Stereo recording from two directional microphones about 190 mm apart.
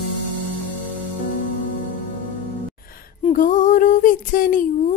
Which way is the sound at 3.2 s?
40° left (ahead or behind).